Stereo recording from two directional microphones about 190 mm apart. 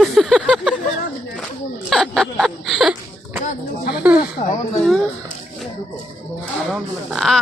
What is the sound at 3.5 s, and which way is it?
Speech, 55° left (ahead or behind).